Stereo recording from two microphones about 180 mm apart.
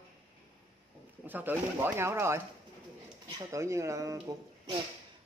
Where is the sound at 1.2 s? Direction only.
10° right (ahead or behind).